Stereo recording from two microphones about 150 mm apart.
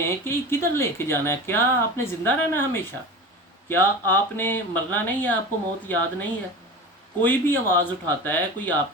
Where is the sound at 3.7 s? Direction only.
15° left (ahead or behind).